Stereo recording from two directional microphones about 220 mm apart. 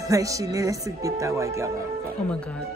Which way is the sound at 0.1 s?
15° right (ahead or behind).